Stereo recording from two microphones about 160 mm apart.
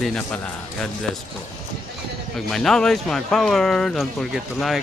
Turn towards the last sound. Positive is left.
turn(degrees=0)  # may be behind; listen again after turning